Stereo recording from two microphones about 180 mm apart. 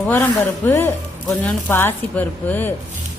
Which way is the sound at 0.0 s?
10° left (ahead or behind).